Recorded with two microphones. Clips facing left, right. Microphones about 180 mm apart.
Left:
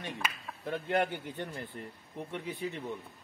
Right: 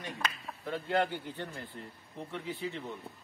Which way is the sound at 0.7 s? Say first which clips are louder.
Even; 20° left (ahead or behind).